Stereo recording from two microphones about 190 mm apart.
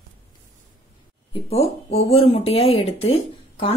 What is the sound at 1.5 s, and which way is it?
Speech, 35° left (ahead or behind).